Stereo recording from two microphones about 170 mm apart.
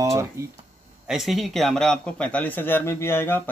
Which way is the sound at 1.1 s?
Centre (ahead or behind).